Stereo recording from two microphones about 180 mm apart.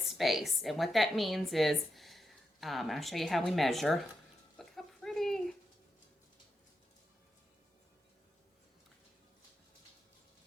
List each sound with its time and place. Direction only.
0.0 s a woman's voice: centre (ahead or behind)
4.5 s frying: centre (ahead or behind)